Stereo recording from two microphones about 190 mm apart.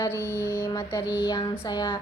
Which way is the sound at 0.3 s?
15° left (ahead or behind).